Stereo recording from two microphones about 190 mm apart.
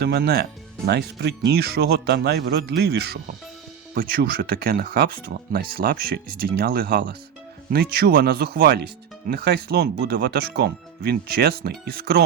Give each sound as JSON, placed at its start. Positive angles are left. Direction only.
{"t": 0.0, "sound": "speech", "side_deg": -55}